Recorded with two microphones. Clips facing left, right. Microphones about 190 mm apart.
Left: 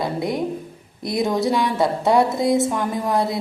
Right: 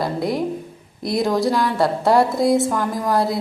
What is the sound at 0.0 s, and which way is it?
A woman's voice, centre (ahead or behind).